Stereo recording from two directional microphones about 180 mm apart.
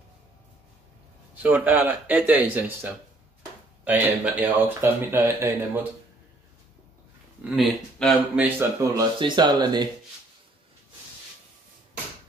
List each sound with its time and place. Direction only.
1.5 s speech: 10° right (ahead or behind)
7.4 s speech: centre (ahead or behind)
8.5 s speech: 20° right (ahead or behind)